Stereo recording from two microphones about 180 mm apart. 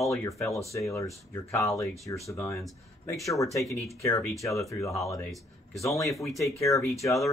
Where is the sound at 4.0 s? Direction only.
15° left (ahead or behind).